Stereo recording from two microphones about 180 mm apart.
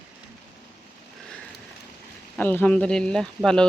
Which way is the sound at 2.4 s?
10° left (ahead or behind).